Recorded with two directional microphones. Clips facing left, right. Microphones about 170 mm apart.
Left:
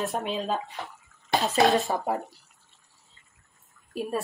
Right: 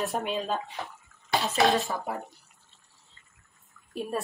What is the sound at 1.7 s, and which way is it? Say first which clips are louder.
Speech: left 4 dB; 20° left (ahead or behind).